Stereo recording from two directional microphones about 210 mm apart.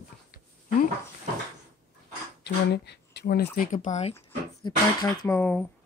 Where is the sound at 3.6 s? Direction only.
35° left (ahead or behind).